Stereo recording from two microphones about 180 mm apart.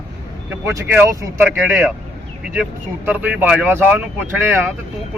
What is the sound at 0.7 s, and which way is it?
Speech, 15° right (ahead or behind).